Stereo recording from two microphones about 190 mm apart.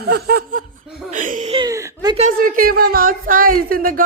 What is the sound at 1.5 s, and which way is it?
Whimper, 20° right (ahead or behind).